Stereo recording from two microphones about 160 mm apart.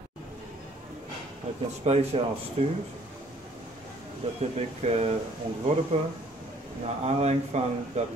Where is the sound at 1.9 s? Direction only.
40° right (ahead or behind).